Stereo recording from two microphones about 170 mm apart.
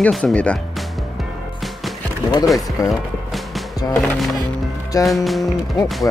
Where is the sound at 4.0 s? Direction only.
Centre (ahead or behind).